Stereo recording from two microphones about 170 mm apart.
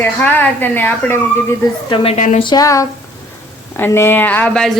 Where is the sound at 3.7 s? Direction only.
15° left (ahead or behind).